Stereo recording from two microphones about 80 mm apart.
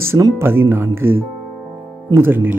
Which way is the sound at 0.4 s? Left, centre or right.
Right.